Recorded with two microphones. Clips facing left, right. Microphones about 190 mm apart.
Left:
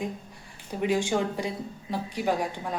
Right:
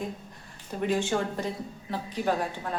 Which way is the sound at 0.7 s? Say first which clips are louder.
Left 1 dB; 10° left (ahead or behind).